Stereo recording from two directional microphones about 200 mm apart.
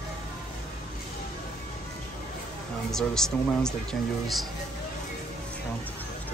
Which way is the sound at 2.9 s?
Centre (ahead or behind).